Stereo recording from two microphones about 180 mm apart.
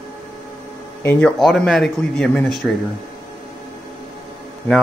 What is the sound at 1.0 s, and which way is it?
Speech, 5° left (ahead or behind).